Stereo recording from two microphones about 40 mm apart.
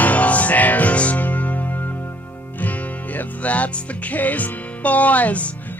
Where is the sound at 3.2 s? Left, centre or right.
Left.